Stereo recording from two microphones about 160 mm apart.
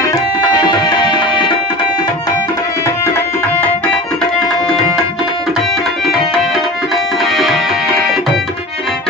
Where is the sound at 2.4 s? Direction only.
20° left (ahead or behind).